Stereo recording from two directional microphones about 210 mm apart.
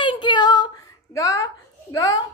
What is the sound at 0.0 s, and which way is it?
Child singing, 20° left (ahead or behind).